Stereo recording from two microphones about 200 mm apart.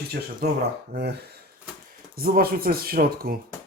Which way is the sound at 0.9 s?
55° right (ahead or behind).